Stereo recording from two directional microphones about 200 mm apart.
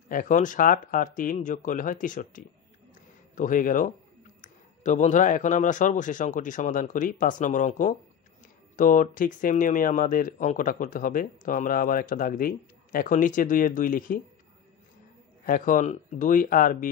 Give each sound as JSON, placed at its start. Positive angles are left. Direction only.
{"t": 0.1, "sound": "speech", "side_deg": 40}
{"t": 2.9, "sound": "a sound", "side_deg": 40}
{"t": 4.4, "sound": "speech", "side_deg": 40}
{"t": 15.4, "sound": "speech", "side_deg": 45}